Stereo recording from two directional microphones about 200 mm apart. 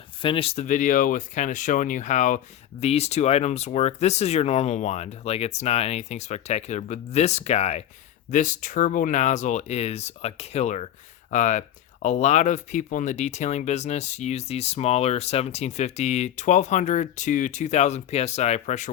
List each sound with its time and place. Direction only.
0.2 s speech: 25° left (ahead or behind)